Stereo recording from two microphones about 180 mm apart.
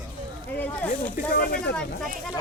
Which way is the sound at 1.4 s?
55° left (ahead or behind).